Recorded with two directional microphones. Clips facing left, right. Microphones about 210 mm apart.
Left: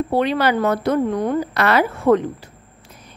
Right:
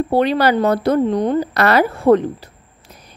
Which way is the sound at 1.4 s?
40° right (ahead or behind).